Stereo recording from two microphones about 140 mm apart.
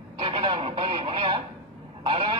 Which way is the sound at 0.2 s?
40° right (ahead or behind).